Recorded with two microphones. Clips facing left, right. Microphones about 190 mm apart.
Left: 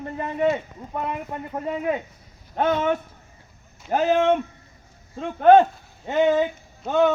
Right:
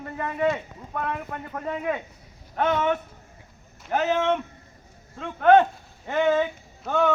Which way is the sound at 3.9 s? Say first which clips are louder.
Left 4 dB; 30° left (ahead or behind).